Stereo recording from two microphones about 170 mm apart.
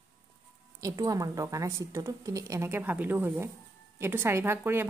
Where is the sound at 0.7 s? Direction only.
20° right (ahead or behind).